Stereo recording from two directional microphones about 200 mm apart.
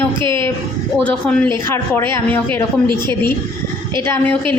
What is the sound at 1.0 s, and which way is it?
A woman's voice, 5° left (ahead or behind).